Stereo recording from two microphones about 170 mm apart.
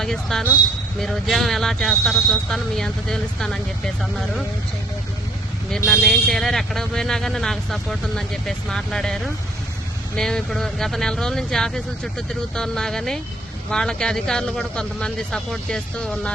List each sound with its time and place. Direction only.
0.0 s speech: centre (ahead or behind)
5.7 s speech: centre (ahead or behind)